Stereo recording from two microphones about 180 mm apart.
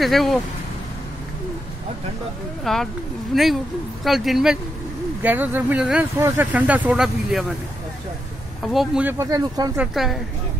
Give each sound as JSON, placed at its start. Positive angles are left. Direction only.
{"t": 0.0, "sound": "speech", "side_deg": 0}
{"t": 2.6, "sound": "speech", "side_deg": 0}
{"t": 8.6, "sound": "speech", "side_deg": -5}
{"t": 9.2, "sound": "speech", "side_deg": -20}
{"t": 9.8, "sound": "speech", "side_deg": 0}